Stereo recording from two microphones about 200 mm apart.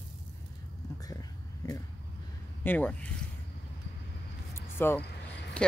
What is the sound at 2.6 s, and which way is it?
Speech, 10° left (ahead or behind).